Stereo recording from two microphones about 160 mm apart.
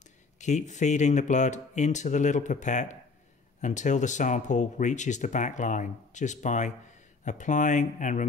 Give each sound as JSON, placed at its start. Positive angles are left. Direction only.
{"t": 0.4, "sound": "speech", "side_deg": 50}